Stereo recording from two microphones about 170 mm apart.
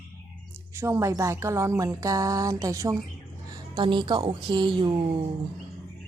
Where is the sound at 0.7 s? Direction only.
15° right (ahead or behind).